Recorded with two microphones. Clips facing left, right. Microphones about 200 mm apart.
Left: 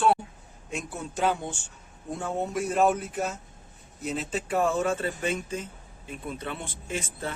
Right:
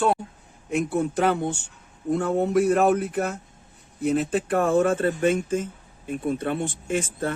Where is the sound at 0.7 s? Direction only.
60° right (ahead or behind).